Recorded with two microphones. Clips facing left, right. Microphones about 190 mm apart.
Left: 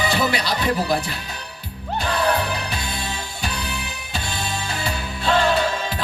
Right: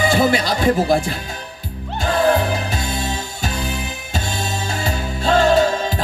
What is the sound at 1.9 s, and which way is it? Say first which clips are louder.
Music: right 5 dB; 45° right (ahead or behind).